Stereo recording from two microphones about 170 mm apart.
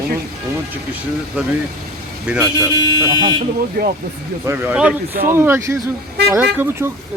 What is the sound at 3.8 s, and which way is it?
Speech, 65° right (ahead or behind).